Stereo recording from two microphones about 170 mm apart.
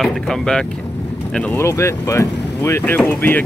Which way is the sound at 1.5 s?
15° left (ahead or behind).